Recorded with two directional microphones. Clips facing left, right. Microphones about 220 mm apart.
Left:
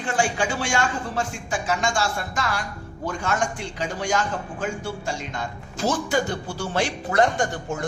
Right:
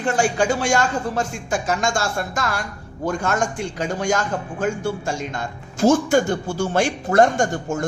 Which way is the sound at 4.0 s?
45° right (ahead or behind).